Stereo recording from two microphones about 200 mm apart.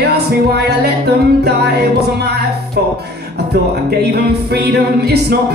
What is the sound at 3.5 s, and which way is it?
Music, 55° right (ahead or behind).